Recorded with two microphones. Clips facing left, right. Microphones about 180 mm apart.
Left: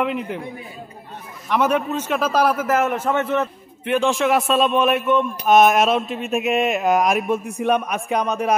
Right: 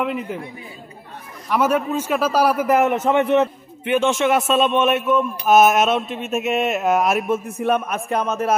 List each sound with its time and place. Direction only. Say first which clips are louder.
0.0 s a man's voice: left 1 dB; centre (ahead or behind)
1.5 s a man's voice: right 1 dB; 5° right (ahead or behind)
3.8 s a man's voice: right 1 dB; centre (ahead or behind)